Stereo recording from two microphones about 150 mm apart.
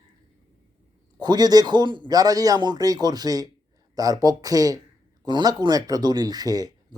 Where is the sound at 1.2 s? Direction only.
25° right (ahead or behind).